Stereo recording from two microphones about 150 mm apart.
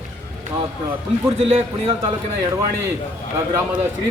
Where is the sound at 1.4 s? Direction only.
40° right (ahead or behind).